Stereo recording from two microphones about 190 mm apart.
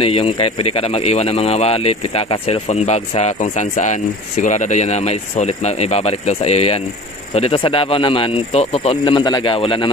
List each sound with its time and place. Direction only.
0.0 s speech: 30° left (ahead or behind)